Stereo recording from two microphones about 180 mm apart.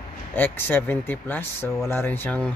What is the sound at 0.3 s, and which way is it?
Speech, 10° left (ahead or behind).